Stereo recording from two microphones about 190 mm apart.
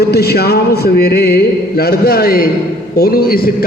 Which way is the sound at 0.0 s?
55° left (ahead or behind).